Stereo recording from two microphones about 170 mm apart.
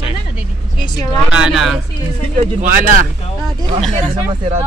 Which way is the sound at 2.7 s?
50° right (ahead or behind).